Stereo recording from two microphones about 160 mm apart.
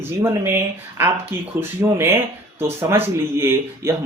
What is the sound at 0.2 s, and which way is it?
Speech, 15° right (ahead or behind).